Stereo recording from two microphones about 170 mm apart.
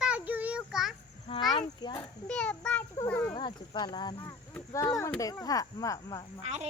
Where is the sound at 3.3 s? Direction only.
30° left (ahead or behind).